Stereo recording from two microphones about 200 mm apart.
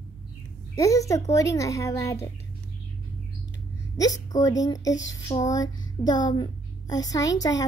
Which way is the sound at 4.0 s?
20° left (ahead or behind).